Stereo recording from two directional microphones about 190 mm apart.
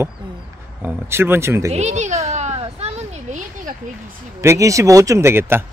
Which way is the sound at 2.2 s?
35° right (ahead or behind).